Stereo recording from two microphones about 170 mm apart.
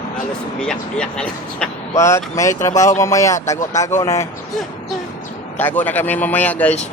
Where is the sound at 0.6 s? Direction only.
5° left (ahead or behind).